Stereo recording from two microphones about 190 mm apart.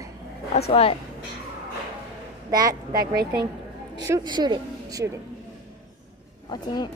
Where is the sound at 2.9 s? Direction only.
55° right (ahead or behind).